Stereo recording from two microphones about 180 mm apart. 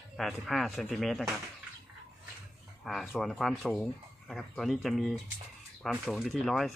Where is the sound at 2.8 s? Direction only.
Centre (ahead or behind).